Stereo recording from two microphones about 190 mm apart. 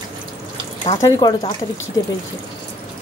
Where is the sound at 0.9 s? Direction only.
20° left (ahead or behind).